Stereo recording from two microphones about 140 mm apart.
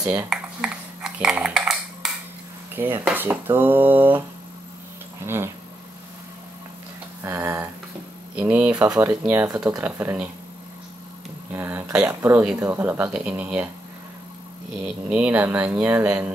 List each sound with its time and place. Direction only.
0.0 s speech: 25° right (ahead or behind)
0.3 s cutlery: 5° right (ahead or behind)
2.0 s a sound: 5° right (ahead or behind)
2.7 s speech: 15° right (ahead or behind)
5.2 s speech: 15° right (ahead or behind)
7.2 s a sound: 20° right (ahead or behind)
8.4 s speech: 10° right (ahead or behind)
9.5 s speech: 25° right (ahead or behind)
9.8 s speech: 15° right (ahead or behind)
11.5 s speech: 15° right (ahead or behind)
15.0 s speech: 10° right (ahead or behind)